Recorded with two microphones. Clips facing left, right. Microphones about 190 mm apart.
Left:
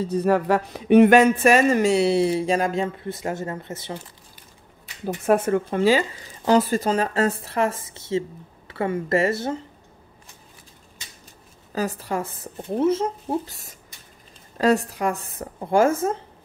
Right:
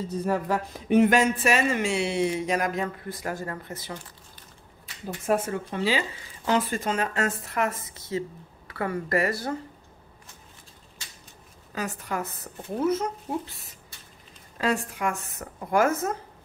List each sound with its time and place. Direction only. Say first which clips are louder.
0.0 s speech: left 7 dB; 70° left (ahead or behind); by 4.0 s 25° left (ahead or behind)
5.0 s speech: left 6 dB; 65° left (ahead or behind); by 9.6 s 25° left (ahead or behind)
11.7 s a woman's voice: left 5 dB; 35° left (ahead or behind)
14.6 s speech: left 7 dB; 40° left (ahead or behind)